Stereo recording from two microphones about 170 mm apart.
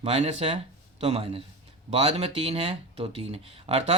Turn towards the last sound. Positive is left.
turn(degrees=-40)  # may be behind; listen again after turning